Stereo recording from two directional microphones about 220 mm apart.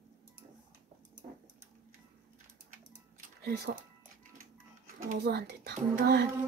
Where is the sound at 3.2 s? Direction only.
45° right (ahead or behind).